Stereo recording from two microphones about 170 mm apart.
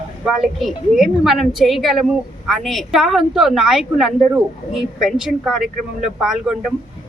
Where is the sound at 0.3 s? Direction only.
Centre (ahead or behind).